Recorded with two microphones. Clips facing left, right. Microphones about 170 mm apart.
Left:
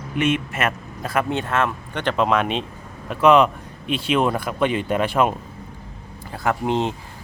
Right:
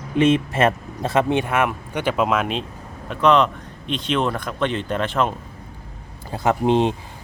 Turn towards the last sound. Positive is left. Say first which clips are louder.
# right 4 dB
turn(degrees=-20)  # may be behind; listen again after turning